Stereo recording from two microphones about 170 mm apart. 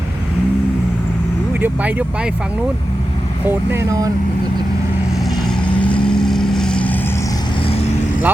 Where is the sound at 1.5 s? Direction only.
10° right (ahead or behind).